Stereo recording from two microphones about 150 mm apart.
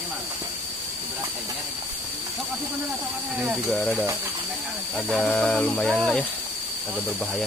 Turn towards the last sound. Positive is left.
turn(degrees=0)  # may be behind; listen again after turning